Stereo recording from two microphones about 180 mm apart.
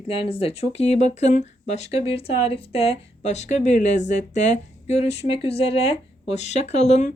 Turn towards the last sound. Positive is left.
turn(degrees=40)  # may be behind; listen again after turning